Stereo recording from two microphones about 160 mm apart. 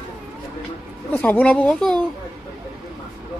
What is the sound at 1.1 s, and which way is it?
Speech, 10° left (ahead or behind).